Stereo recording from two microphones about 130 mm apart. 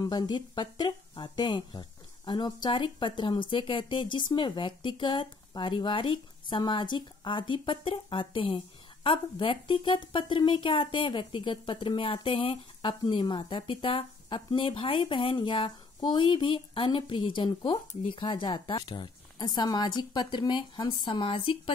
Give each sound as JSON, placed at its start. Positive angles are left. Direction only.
{"t": 0.0, "sound": "speech", "side_deg": 30}